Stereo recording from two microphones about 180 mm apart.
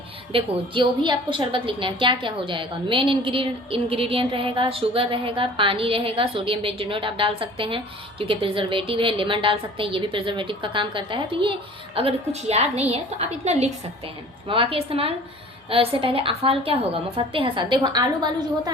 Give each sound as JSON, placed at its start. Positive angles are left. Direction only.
{"t": 0.3, "sound": "a woman's voice", "side_deg": -25}